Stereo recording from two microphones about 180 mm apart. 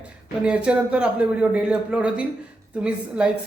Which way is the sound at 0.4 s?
5° right (ahead or behind).